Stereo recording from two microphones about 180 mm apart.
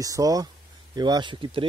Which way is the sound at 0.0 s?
20° right (ahead or behind).